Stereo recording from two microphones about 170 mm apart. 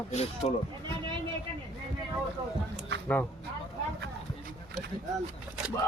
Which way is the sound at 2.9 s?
85° right.